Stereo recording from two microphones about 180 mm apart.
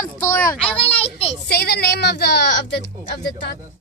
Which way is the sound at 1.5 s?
65° left (ahead or behind).